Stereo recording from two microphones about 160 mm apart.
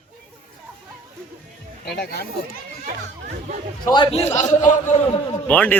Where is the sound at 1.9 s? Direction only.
85° left.